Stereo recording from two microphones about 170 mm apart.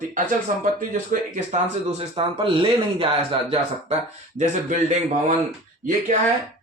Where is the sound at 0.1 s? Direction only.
50° right (ahead or behind).